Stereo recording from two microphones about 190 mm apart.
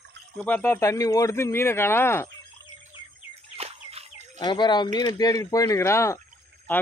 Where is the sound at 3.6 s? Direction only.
35° right (ahead or behind).